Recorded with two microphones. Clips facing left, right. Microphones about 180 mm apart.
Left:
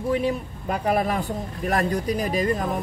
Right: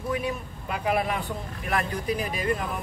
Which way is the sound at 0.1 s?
35° left (ahead or behind).